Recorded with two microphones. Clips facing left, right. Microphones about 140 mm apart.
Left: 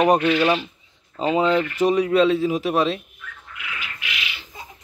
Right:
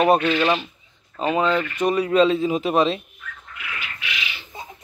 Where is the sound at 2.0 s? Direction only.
5° left (ahead or behind).